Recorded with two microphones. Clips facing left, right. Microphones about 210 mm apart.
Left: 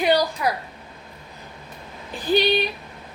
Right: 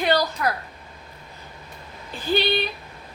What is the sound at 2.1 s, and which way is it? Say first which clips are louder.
Speech: left 3 dB; 15° left (ahead or behind).